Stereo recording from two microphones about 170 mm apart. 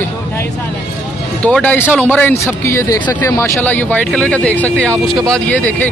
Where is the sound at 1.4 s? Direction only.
10° left (ahead or behind).